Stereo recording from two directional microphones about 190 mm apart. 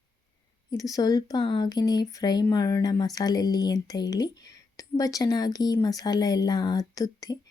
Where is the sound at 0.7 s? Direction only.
20° left (ahead or behind).